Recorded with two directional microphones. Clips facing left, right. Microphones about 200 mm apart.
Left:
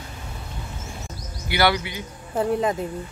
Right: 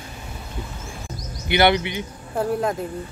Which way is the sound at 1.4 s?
20° right (ahead or behind).